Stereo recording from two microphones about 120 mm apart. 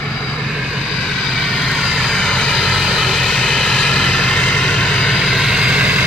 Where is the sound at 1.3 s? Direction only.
Centre (ahead or behind).